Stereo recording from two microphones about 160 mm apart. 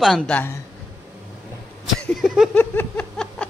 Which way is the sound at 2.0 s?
Centre (ahead or behind).